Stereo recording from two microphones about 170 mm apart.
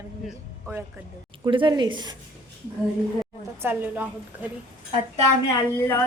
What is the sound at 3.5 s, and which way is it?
Speech, 10° right (ahead or behind).